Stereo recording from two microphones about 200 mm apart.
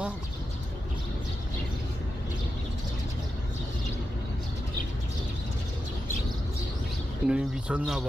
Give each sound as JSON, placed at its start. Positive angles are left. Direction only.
{"t": 7.2, "sound": "speech", "side_deg": -5}